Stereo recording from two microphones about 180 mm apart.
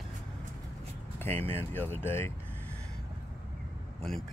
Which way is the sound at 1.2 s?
10° left (ahead or behind).